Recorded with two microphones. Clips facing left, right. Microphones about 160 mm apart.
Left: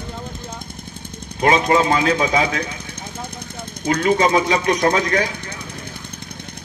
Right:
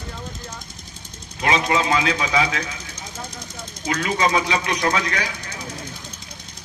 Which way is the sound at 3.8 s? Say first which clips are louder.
Left 5 dB; 55° left (ahead or behind).